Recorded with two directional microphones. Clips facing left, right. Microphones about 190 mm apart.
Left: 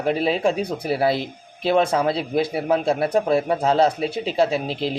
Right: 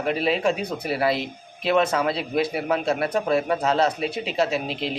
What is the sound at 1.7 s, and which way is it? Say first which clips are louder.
Speech: left 2 dB; 30° left (ahead or behind).